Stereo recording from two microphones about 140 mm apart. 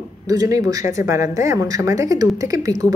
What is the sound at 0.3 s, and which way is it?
A woman's voice, 25° right (ahead or behind).